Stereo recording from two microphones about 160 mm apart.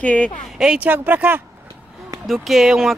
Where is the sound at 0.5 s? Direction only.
5° right (ahead or behind).